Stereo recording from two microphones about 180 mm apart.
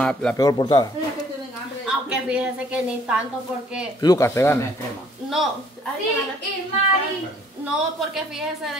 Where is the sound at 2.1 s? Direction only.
5° right (ahead or behind).